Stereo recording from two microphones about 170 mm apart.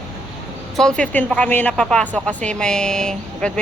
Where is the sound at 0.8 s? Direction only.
5° left (ahead or behind).